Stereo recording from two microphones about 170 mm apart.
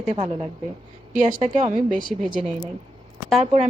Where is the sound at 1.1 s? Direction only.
50° right (ahead or behind).